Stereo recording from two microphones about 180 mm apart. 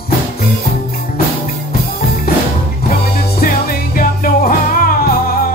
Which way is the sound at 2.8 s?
50° left (ahead or behind).